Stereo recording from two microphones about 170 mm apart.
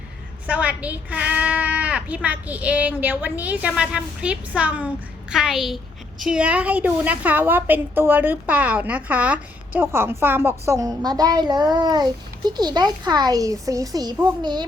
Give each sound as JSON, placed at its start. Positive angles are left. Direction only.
{"t": 0.4, "sound": "a woman's voice", "side_deg": -10}